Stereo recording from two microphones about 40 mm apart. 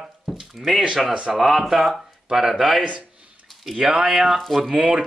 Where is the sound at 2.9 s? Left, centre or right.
Right.